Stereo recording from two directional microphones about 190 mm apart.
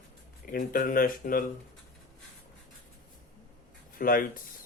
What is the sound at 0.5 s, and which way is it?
Speech, 45° left (ahead or behind).